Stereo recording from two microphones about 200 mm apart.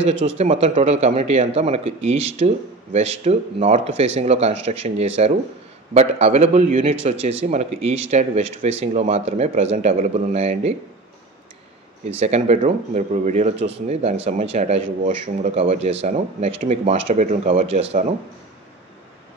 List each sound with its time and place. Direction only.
0.4 s speech: 30° right (ahead or behind)
12.2 s speech: 30° right (ahead or behind)